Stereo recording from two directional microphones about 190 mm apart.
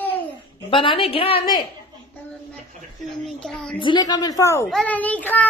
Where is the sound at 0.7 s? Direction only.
30° left (ahead or behind).